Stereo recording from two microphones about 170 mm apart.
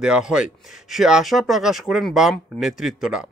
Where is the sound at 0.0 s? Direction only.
5° right (ahead or behind).